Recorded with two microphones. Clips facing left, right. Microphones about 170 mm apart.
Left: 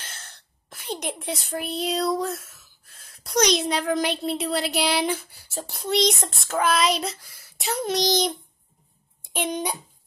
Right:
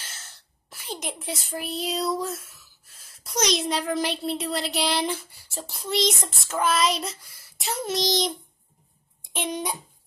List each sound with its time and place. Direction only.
0.0 s sneeze: 55° left (ahead or behind)
0.7 s a woman's voice: centre (ahead or behind)